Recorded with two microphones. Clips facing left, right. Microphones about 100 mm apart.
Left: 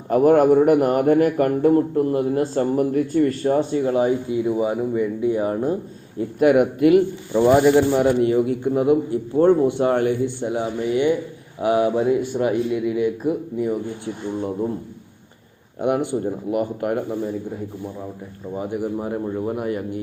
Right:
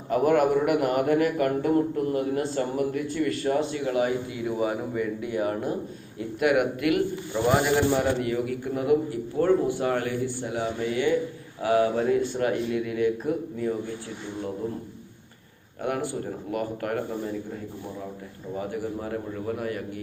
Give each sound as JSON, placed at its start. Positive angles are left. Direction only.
{"t": 0.1, "sound": "a man's voice", "side_deg": 40}
{"t": 5.2, "sound": "a man's voice", "side_deg": 25}
{"t": 15.8, "sound": "a man's voice", "side_deg": 20}
{"t": 18.5, "sound": "a man's voice", "side_deg": 20}